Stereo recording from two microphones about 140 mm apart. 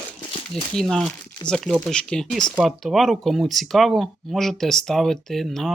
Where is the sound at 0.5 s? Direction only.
5° left (ahead or behind).